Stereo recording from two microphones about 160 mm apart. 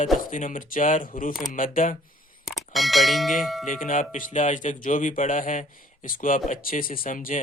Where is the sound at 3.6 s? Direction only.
55° left (ahead or behind).